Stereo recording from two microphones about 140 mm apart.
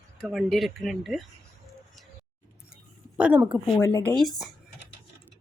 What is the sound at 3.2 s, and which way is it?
Speech, 5° right (ahead or behind).